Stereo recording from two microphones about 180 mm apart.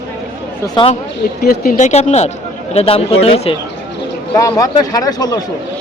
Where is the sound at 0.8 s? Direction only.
25° left (ahead or behind).